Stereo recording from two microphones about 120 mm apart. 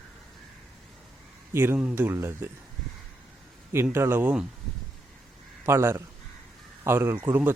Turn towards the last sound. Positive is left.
turn(degrees=-15)  # may be behind; listen again after turning